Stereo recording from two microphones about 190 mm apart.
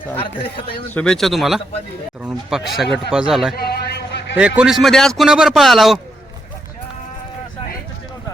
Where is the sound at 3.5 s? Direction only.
55° left (ahead or behind).